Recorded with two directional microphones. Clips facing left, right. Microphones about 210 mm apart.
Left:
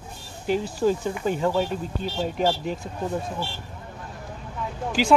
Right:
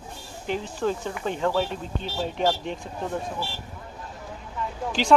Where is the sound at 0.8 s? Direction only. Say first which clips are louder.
Left 4 dB; 10° left (ahead or behind).